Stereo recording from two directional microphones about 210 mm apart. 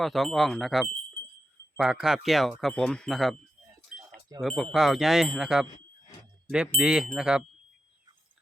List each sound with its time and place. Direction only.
0.0 s speech: centre (ahead or behind)
3.8 s livestock: centre (ahead or behind)
4.4 s speech: centre (ahead or behind)
6.7 s speech: 5° right (ahead or behind)